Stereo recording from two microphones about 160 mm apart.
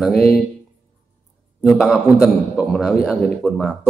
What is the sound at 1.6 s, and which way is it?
Speech, centre (ahead or behind).